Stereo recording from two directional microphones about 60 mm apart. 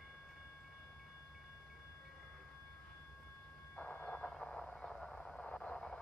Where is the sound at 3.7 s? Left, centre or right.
Left.